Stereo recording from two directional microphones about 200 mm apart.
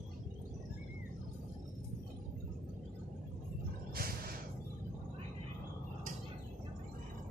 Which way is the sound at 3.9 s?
45° right (ahead or behind).